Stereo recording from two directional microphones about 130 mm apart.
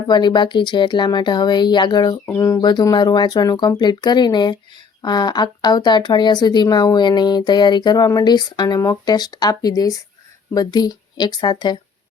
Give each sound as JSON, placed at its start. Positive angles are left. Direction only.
{"t": 0.1, "sound": "speech", "side_deg": 35}
{"t": 2.2, "sound": "speech", "side_deg": 25}